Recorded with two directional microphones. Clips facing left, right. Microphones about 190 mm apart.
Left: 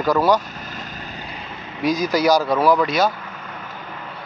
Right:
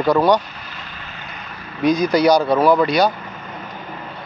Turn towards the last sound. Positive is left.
turn(degrees=0)  # may be behind; listen again after turning